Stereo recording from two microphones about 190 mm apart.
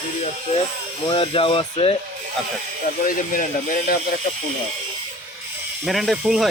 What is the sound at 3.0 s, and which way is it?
Speech, 45° left (ahead or behind).